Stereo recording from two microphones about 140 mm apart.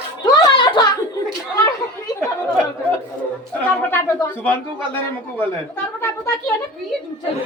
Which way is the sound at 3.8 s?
15° left (ahead or behind).